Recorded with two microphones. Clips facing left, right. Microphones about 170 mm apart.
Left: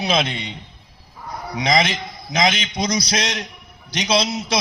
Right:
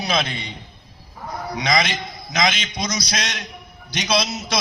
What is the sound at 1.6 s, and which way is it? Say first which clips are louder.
A man's voice: left 3 dB; 30° left (ahead or behind).